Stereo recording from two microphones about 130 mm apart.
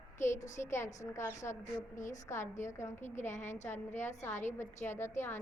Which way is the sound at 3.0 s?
65° left (ahead or behind).